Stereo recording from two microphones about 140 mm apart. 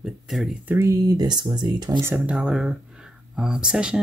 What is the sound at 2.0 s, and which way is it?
Speech, 10° right (ahead or behind).